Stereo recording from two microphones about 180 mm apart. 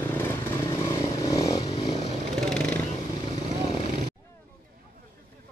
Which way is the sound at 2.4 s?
5° left (ahead or behind).